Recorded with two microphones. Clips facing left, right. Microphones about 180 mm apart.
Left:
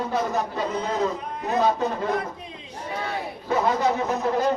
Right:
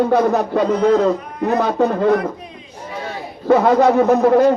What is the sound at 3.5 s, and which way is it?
A man's voice, 65° right (ahead or behind).